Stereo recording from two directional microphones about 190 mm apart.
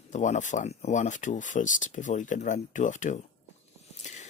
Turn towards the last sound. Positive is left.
turn(degrees=40)  # may be behind; listen again after turning